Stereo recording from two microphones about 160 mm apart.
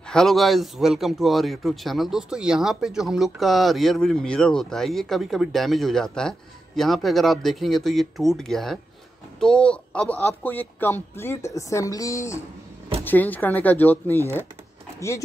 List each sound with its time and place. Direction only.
0.1 s a man's voice: centre (ahead or behind)